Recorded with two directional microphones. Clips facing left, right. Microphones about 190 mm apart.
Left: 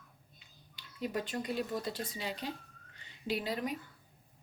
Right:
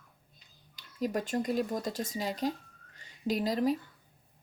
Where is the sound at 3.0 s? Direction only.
40° right (ahead or behind).